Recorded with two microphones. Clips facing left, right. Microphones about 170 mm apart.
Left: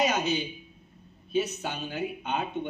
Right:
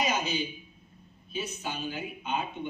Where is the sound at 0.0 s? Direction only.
65° left (ahead or behind).